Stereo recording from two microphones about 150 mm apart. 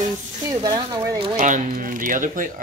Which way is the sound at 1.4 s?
55° right (ahead or behind).